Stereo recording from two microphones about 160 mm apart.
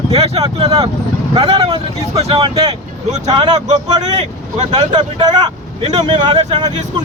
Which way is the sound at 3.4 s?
25° right (ahead or behind).